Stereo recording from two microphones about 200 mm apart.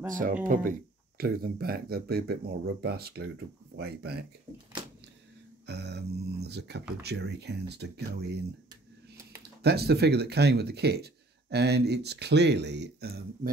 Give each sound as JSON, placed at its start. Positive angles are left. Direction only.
{"t": 0.1, "sound": "speech", "side_deg": -40}
{"t": 5.7, "sound": "speech", "side_deg": -55}
{"t": 9.6, "sound": "speech", "side_deg": -55}